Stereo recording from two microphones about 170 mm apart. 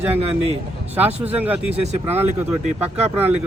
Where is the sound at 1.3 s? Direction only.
10° right (ahead or behind).